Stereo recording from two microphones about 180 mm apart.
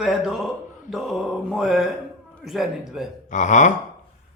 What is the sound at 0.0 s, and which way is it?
A man's voice, centre (ahead or behind).